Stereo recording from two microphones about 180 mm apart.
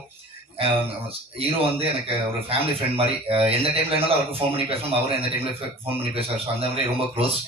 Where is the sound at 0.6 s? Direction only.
30° right (ahead or behind).